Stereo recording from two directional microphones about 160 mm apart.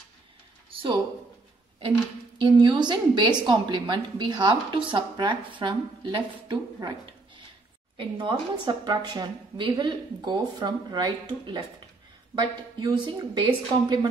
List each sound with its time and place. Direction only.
2.4 s a woman's voice: 30° right (ahead or behind)
8.0 s a woman's voice: 30° right (ahead or behind)